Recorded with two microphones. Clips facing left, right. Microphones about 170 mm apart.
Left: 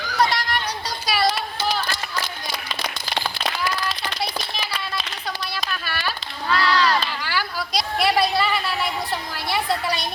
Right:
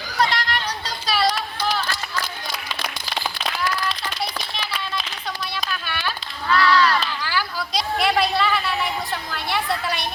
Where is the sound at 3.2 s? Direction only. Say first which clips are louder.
Right 1 dB; centre (ahead or behind).